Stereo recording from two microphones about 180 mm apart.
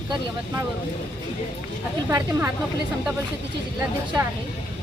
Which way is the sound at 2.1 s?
15° right (ahead or behind).